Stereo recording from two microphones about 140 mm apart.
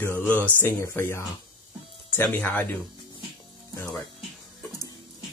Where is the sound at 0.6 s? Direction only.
15° left (ahead or behind).